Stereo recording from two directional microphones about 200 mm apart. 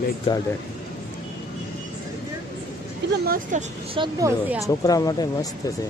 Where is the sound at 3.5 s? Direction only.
40° right (ahead or behind).